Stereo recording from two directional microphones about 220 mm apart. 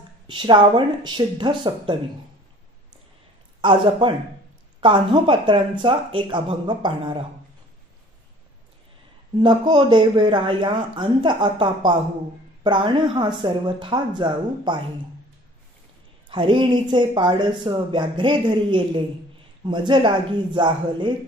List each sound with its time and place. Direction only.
0.3 s speech: 20° right (ahead or behind)
3.6 s speech: 25° right (ahead or behind)
9.4 s speech: 20° right (ahead or behind)
16.3 s speech: 20° right (ahead or behind)